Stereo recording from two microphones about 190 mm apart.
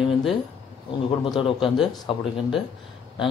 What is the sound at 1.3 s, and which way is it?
Speech, 25° left (ahead or behind).